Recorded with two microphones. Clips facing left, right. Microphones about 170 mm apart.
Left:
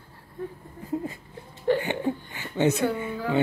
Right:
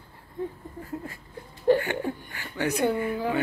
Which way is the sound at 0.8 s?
20° left (ahead or behind).